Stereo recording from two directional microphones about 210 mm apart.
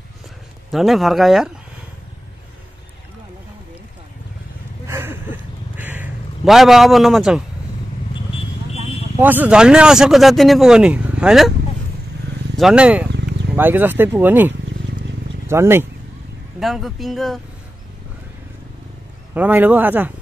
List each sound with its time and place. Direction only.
0.7 s speech: centre (ahead or behind)
4.8 s a sound: 10° right (ahead or behind)
9.2 s speech: 10° right (ahead or behind)
12.5 s speech: 5° right (ahead or behind)
13.1 s a sound: 55° right (ahead or behind)
13.6 s speech: 10° right (ahead or behind)
16.5 s speech: centre (ahead or behind)
19.3 s speech: 10° right (ahead or behind)